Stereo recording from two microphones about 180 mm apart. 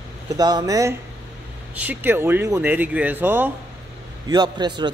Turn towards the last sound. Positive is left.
turn(degrees=-25)  # may be behind; listen again after turning